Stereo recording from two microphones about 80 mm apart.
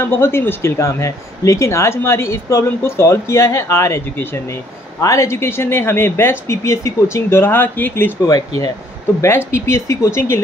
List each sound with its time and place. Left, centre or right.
0.0 s speech: left
8.2 s speech: left
9.2 s speech: left